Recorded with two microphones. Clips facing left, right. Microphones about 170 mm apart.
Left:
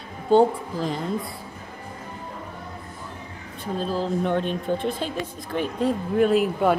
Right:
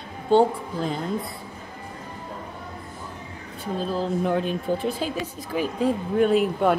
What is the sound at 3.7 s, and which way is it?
Speech, centre (ahead or behind).